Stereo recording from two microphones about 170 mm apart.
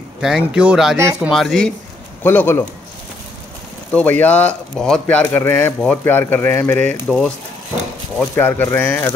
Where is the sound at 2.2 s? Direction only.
10° left (ahead or behind).